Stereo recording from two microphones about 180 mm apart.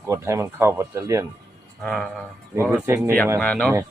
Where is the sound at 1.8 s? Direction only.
5° left (ahead or behind).